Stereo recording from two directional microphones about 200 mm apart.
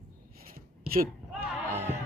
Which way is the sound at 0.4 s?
45° right (ahead or behind).